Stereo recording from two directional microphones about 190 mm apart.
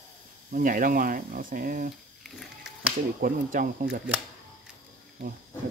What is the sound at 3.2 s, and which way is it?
Speech, 45° right (ahead or behind).